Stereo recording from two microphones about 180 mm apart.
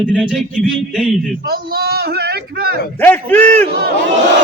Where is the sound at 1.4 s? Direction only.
60° right (ahead or behind).